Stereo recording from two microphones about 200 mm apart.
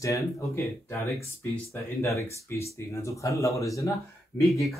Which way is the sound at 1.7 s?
15° left (ahead or behind).